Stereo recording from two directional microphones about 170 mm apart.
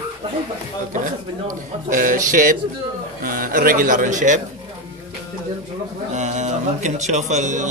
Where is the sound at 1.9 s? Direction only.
55° right (ahead or behind).